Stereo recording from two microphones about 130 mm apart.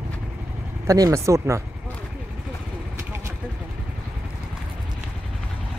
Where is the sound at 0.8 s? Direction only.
25° right (ahead or behind).